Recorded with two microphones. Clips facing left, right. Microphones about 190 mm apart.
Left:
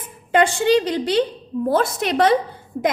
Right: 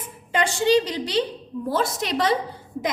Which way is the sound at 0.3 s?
55° left (ahead or behind).